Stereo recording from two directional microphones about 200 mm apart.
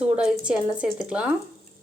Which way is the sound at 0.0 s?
5° right (ahead or behind).